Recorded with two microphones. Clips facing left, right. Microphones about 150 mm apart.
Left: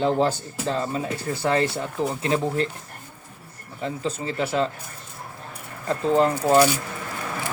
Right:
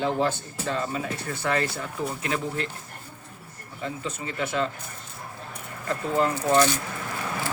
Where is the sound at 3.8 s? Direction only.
30° left (ahead or behind).